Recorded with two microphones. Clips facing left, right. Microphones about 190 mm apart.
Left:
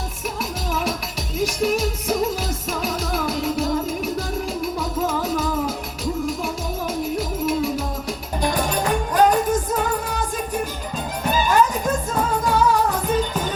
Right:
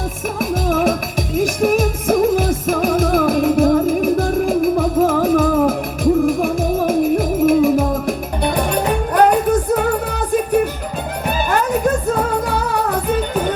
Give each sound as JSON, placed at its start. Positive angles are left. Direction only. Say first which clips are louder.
{"t": 0.3, "sound": "music", "louder": "right 10 dB", "side_deg": -50}